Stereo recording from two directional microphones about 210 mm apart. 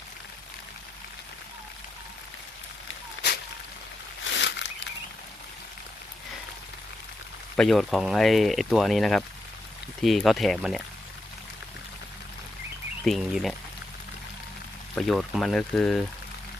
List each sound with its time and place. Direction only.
4.2 s a sound: 60° left (ahead or behind)
7.5 s speech: centre (ahead or behind)
13.1 s speech: centre (ahead or behind)
14.9 s speech: centre (ahead or behind)